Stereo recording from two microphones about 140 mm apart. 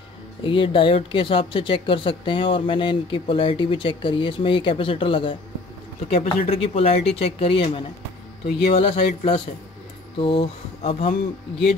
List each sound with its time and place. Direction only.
0.4 s speech: 40° left (ahead or behind)